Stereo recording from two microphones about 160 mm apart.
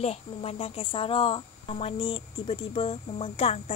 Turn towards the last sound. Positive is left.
turn(degrees=40)  # may be behind; listen again after turning